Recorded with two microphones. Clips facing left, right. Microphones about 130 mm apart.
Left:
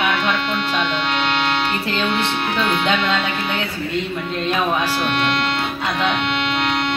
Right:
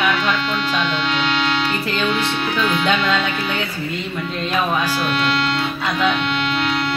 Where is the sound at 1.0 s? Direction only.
55° left (ahead or behind).